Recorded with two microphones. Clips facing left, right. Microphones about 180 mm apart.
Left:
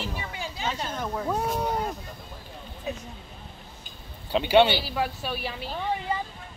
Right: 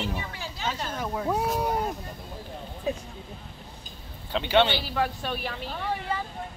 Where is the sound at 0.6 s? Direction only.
5° right (ahead or behind).